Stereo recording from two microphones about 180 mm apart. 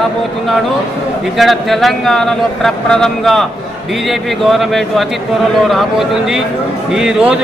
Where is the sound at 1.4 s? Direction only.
Centre (ahead or behind).